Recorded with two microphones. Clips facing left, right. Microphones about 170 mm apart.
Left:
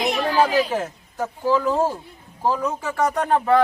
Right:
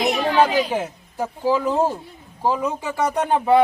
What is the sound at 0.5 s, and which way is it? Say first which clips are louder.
Speech: even; 5° right (ahead or behind).